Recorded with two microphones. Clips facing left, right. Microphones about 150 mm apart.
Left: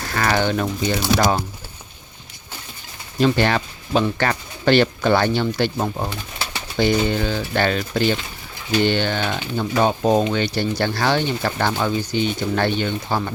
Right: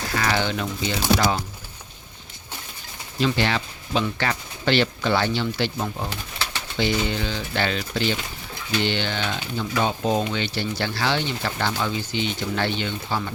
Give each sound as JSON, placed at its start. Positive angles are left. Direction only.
{"t": 0.1, "sound": "speech", "side_deg": 50}
{"t": 3.2, "sound": "speech", "side_deg": 50}